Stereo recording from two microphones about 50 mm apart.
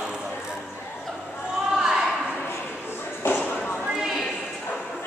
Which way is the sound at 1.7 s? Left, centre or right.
Centre.